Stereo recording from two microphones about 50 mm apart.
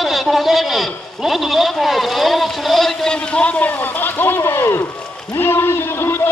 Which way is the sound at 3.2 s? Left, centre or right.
Left.